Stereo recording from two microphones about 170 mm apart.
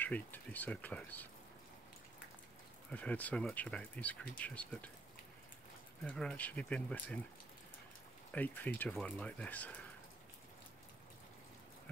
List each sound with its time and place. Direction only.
0.0 s speech: 10° left (ahead or behind)
2.9 s speech: 10° left (ahead or behind)
6.0 s speech: 5° left (ahead or behind)
8.3 s speech: 10° left (ahead or behind)